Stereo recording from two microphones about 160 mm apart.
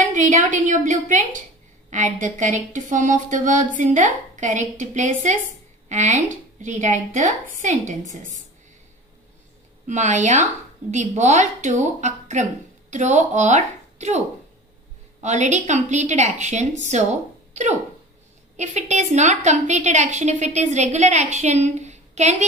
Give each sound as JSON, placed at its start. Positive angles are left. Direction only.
{"t": 0.0, "sound": "a woman's voice", "side_deg": -50}
{"t": 9.8, "sound": "a woman's voice", "side_deg": -50}